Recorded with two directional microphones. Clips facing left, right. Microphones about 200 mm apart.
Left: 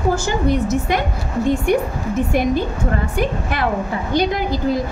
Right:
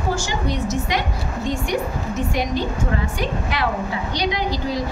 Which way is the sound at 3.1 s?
50° left (ahead or behind).